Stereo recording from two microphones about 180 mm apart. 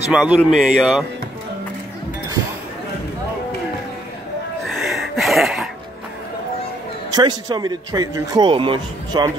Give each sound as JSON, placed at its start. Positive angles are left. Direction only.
{"t": 0.1, "sound": "speech", "side_deg": -5}
{"t": 4.6, "sound": "a sound", "side_deg": 0}
{"t": 7.2, "sound": "a man's voice", "side_deg": -25}